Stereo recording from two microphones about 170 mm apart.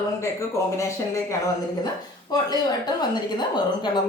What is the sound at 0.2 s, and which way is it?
A woman's voice, 15° left (ahead or behind).